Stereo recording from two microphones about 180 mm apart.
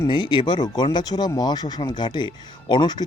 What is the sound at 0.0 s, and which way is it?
Speech, 25° left (ahead or behind).